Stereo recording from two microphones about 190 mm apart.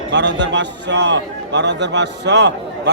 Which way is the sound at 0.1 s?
65° right (ahead or behind).